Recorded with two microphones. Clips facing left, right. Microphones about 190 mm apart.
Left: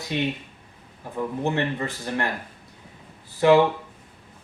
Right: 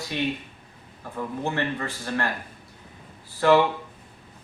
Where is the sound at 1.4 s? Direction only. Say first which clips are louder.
Left 2 dB; 20° left (ahead or behind).